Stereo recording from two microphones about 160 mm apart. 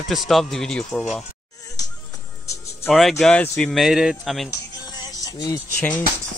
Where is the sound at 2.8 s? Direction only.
Centre (ahead or behind).